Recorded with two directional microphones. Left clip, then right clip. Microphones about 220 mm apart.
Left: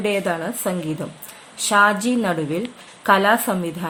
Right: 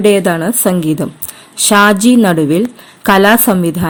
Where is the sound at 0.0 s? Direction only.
45° right (ahead or behind).